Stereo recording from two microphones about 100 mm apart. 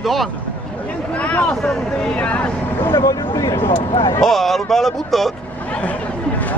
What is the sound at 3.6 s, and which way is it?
Speech, 65° left (ahead or behind).